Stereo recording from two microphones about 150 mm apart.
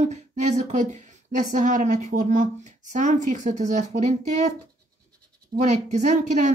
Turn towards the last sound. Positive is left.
turn(degrees=-50)  # may be behind; listen again after turning